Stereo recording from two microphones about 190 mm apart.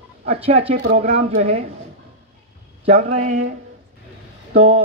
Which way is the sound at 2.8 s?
35° right (ahead or behind).